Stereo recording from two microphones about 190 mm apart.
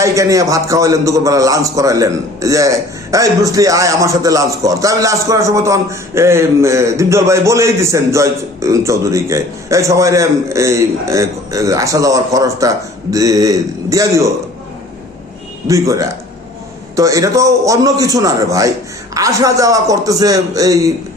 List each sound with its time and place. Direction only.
0.0 s a man's voice: 15° right (ahead or behind)
15.6 s a man's voice: 15° right (ahead or behind)